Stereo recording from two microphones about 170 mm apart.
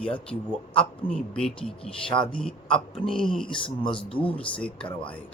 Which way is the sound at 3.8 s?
30° left (ahead or behind).